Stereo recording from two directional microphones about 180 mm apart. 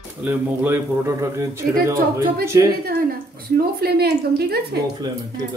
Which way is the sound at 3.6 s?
60° right (ahead or behind).